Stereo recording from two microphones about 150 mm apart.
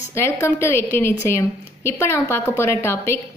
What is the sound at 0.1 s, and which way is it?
Speech, 15° left (ahead or behind).